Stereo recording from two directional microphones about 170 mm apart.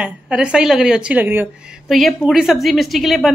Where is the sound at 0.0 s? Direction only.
5° right (ahead or behind).